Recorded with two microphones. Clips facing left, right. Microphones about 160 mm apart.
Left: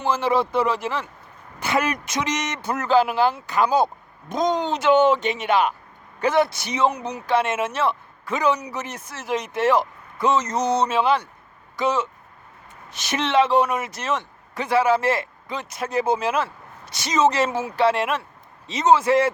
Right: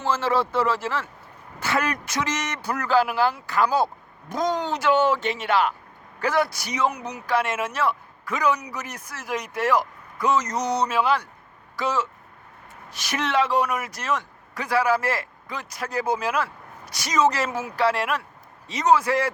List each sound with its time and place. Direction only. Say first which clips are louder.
0.0 s a man's voice: left 2 dB; 15° left (ahead or behind)